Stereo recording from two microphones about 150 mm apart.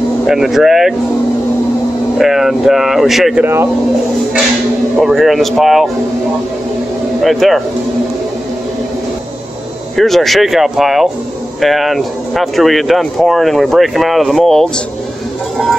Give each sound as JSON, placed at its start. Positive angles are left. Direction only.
{"t": 0.3, "sound": "speech", "side_deg": 0}
{"t": 2.1, "sound": "speech", "side_deg": 0}
{"t": 4.9, "sound": "speech", "side_deg": 0}
{"t": 7.2, "sound": "speech", "side_deg": 0}
{"t": 9.9, "sound": "speech", "side_deg": 0}